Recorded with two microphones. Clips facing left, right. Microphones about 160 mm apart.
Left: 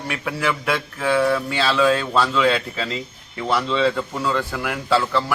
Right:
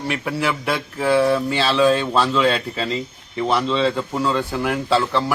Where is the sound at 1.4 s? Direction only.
25° right (ahead or behind).